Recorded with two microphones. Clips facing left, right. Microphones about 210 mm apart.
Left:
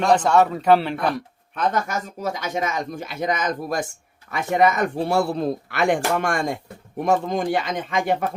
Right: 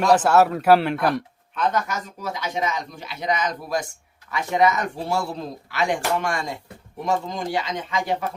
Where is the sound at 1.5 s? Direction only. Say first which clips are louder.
Left 1 dB; 45° left (ahead or behind).